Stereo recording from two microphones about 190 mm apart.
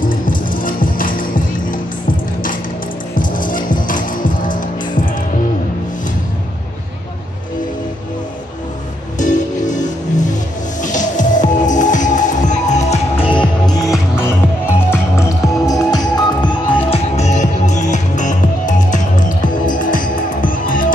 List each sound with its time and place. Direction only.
0.1 s music: 45° left (ahead or behind)
3.2 s music: 45° left (ahead or behind)
9.2 s music: 40° left (ahead or behind)